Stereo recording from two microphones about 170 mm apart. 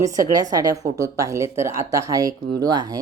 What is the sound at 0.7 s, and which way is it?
Speech, 20° right (ahead or behind).